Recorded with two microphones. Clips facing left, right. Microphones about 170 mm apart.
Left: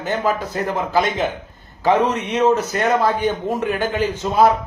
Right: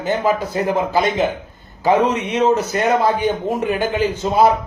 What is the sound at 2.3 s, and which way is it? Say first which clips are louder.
A man's voice: left 1 dB; 5° right (ahead or behind).